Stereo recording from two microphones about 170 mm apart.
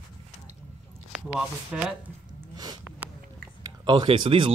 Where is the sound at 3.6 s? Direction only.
25° right (ahead or behind).